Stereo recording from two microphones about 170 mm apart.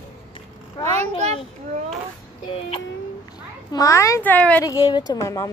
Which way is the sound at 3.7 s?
20° left (ahead or behind).